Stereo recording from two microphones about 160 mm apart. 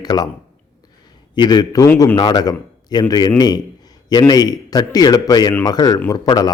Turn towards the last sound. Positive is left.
turn(degrees=25)  # may be behind; listen again after turning